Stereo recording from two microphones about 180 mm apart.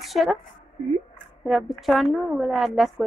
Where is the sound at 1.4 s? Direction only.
Centre (ahead or behind).